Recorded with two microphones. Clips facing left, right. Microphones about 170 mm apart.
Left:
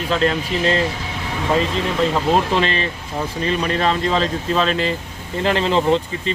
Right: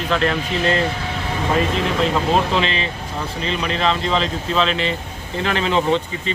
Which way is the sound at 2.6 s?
50° left (ahead or behind).